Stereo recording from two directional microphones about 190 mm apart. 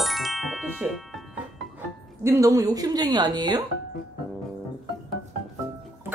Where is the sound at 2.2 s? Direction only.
15° right (ahead or behind).